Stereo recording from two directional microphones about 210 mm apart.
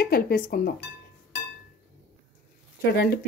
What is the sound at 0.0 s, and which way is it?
Speech, 45° left (ahead or behind).